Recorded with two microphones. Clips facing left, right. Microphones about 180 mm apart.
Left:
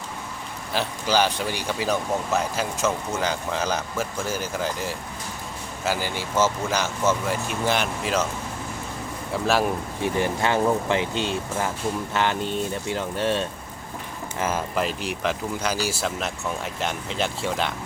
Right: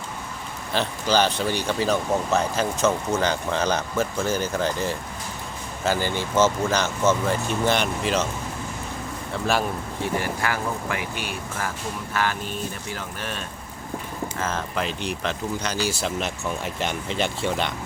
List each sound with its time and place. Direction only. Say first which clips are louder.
0.7 s speech: right 1 dB; 10° left (ahead or behind)
10.0 s speech: left 2 dB; 20° left (ahead or behind)
14.3 s speech: left 4 dB; 15° left (ahead or behind)